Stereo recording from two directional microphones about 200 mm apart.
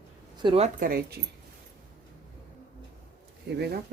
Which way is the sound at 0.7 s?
45° right (ahead or behind).